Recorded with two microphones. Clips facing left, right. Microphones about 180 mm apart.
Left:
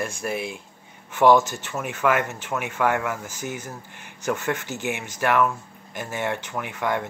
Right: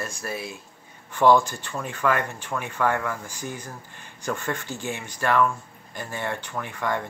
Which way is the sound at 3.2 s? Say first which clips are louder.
Left 2 dB; 20° left (ahead or behind).